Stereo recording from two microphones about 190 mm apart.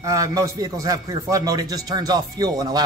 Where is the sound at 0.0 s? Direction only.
15° right (ahead or behind).